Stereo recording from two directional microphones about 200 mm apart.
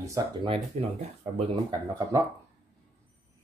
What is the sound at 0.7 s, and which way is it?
Speech, 35° right (ahead or behind).